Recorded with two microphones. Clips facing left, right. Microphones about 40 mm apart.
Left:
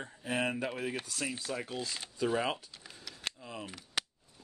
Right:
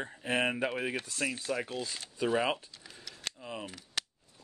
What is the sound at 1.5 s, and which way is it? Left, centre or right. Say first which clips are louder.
Speech: right 3 dB; centre.